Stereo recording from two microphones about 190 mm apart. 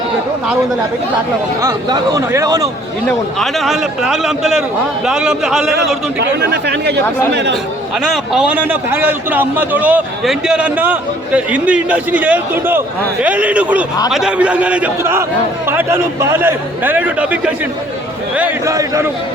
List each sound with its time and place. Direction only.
1.6 s a man's voice: 15° right (ahead or behind)
3.1 s a man's voice: centre (ahead or behind)
6.1 s speech: 65° right (ahead or behind)
8.0 s a man's voice: centre (ahead or behind)